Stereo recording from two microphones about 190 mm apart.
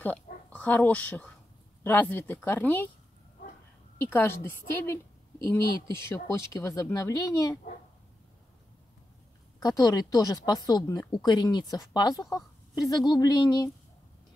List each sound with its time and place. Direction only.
0.0 s speech: 10° left (ahead or behind)
4.1 s speech: 10° left (ahead or behind)
9.6 s a woman's voice: 20° left (ahead or behind)